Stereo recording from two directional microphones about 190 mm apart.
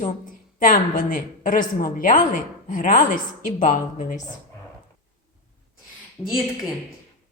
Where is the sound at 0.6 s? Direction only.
45° left (ahead or behind).